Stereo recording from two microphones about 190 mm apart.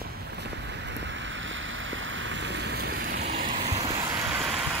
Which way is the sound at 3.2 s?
35° right (ahead or behind).